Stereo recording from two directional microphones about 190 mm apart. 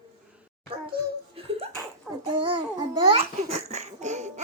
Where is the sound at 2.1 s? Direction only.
Centre (ahead or behind).